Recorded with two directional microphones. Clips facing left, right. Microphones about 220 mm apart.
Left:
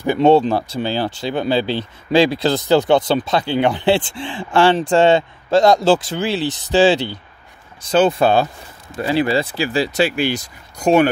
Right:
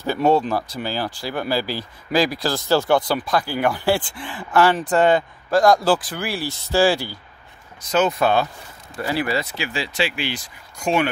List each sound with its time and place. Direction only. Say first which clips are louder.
0.0 s speech: left 5 dB; 20° left (ahead or behind); by 11.1 s 40° left (ahead or behind)